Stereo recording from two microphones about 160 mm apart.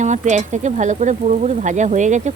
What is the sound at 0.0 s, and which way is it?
Speech, 50° right (ahead or behind).